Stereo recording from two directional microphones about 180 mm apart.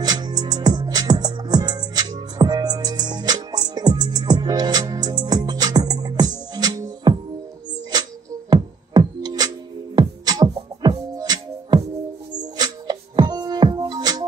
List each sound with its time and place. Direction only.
0.0 s music: 20° right (ahead or behind)